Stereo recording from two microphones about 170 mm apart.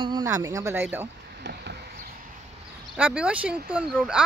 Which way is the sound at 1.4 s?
85° right.